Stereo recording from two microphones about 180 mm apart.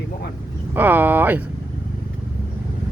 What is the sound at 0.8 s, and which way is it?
Speech, 10° right (ahead or behind).